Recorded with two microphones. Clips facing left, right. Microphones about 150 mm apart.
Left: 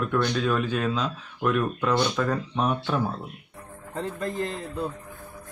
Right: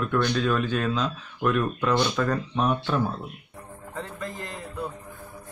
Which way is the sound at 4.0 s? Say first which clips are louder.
Left 6 dB; 25° left (ahead or behind).